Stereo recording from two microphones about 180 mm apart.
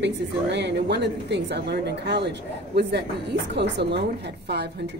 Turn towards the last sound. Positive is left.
turn(degrees=-65)  # may be behind; listen again after turning